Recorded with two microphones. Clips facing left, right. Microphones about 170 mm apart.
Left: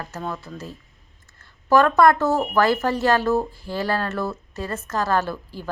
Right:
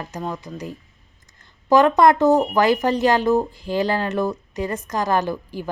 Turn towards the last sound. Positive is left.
turn(degrees=-15)  # may be behind; listen again after turning